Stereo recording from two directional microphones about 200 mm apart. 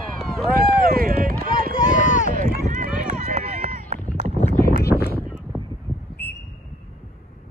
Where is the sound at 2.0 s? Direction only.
35° left (ahead or behind).